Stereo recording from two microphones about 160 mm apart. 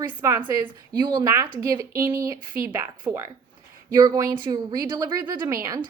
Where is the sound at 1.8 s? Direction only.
65° right (ahead or behind).